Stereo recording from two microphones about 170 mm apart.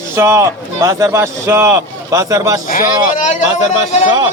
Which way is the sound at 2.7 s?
50° left (ahead or behind).